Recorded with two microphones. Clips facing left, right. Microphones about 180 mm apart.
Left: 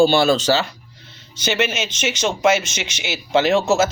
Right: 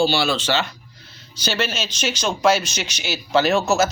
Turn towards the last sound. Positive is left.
turn(degrees=25)  # may be behind; listen again after turning